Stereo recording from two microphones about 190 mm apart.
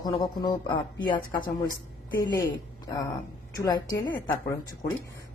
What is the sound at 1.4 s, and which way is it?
Speech, 50° left (ahead or behind).